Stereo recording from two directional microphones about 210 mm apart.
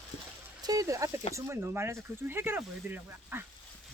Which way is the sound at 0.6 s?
15° right (ahead or behind).